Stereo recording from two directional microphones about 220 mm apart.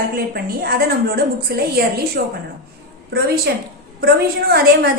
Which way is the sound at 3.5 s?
50° right (ahead or behind).